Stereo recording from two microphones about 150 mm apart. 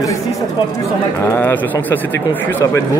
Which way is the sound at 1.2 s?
15° left (ahead or behind).